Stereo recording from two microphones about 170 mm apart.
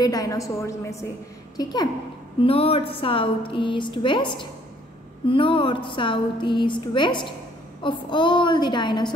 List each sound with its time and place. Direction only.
0.0 s a woman's voice: 20° left (ahead or behind)